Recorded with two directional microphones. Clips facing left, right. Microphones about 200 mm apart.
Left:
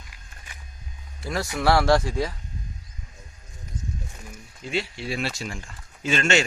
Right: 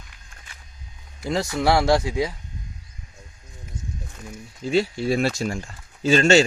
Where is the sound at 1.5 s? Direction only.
20° right (ahead or behind).